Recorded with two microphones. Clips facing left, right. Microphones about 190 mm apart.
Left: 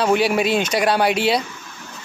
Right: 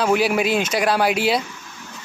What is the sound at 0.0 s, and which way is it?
Speech, centre (ahead or behind).